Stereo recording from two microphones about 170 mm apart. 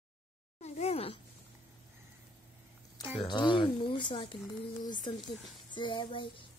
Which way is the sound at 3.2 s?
25° left (ahead or behind).